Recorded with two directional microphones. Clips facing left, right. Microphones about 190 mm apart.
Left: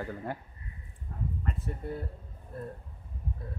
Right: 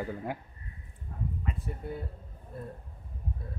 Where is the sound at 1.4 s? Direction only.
5° right (ahead or behind).